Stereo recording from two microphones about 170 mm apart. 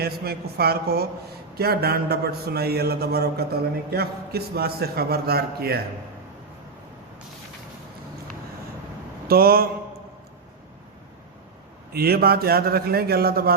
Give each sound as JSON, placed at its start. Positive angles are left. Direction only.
{"t": 0.0, "sound": "a man's voice", "side_deg": -65}
{"t": 9.2, "sound": "speech", "side_deg": -65}
{"t": 11.9, "sound": "a man's voice", "side_deg": -65}